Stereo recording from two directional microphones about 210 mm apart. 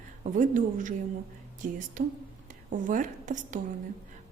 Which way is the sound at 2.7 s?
40° right (ahead or behind).